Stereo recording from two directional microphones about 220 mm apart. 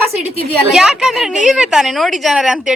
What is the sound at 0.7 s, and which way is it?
A woman's voice, 5° right (ahead or behind).